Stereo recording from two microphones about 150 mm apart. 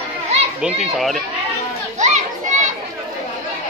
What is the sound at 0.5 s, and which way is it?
Speech, 5° right (ahead or behind).